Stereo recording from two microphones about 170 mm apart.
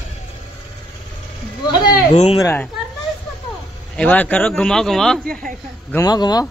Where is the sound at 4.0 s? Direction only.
10° left (ahead or behind).